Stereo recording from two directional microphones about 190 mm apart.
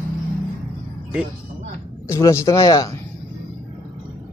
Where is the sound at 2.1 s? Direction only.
15° left (ahead or behind).